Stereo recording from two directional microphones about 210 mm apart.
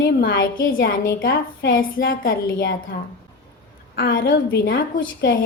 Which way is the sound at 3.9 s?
45° left (ahead or behind).